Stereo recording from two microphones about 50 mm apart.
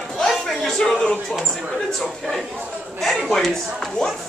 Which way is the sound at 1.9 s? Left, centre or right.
Centre.